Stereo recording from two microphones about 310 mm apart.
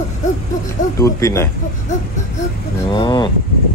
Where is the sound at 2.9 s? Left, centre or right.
Centre.